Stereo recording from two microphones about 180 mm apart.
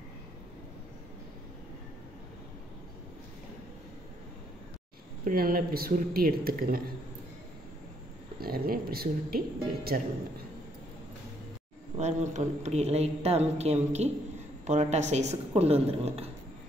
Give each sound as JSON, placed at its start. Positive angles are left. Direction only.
{"t": 5.2, "sound": "speech", "side_deg": -55}
{"t": 8.4, "sound": "a man's voice", "side_deg": -55}
{"t": 12.0, "sound": "a woman's voice", "side_deg": -40}